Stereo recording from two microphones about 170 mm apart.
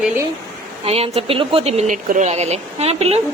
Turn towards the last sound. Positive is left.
turn(degrees=-40)  # may be behind; listen again after turning